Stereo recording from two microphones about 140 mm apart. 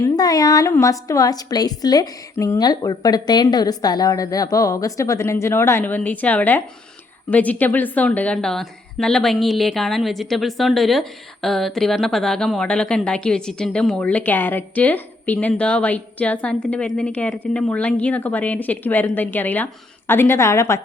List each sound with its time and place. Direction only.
0.0 s a woman's voice: 25° left (ahead or behind)